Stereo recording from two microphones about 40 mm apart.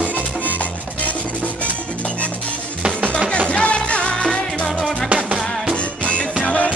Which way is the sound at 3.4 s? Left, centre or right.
Left.